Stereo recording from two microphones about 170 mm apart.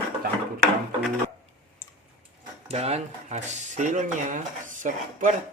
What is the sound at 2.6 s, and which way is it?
Speech, 40° right (ahead or behind).